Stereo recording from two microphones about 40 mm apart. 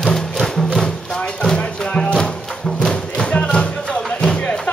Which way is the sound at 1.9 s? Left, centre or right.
Left.